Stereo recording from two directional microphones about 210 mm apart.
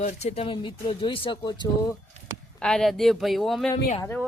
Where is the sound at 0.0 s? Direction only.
30° left (ahead or behind).